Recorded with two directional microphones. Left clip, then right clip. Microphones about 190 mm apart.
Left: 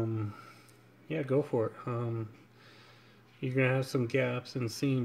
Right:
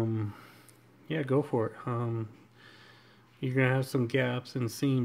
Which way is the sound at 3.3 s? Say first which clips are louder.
Right 1 dB; 15° right (ahead or behind).